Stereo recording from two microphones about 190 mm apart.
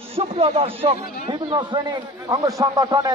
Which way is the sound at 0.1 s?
30° right (ahead or behind).